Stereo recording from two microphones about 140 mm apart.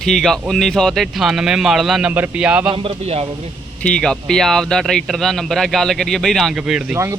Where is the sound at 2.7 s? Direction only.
45° right (ahead or behind).